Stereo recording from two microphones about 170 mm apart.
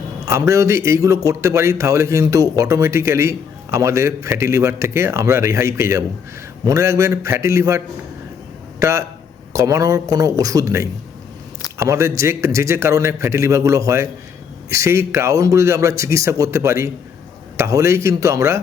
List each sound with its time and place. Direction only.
0.3 s a man's voice: 15° right (ahead or behind)
8.8 s a man's voice: 15° right (ahead or behind)